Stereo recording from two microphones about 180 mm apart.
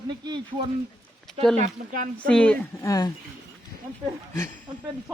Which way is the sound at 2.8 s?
20° left (ahead or behind).